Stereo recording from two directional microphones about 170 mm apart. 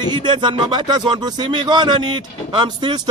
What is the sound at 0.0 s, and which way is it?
Speech, 25° right (ahead or behind).